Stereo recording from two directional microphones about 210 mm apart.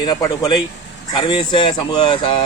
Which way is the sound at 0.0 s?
20° left (ahead or behind).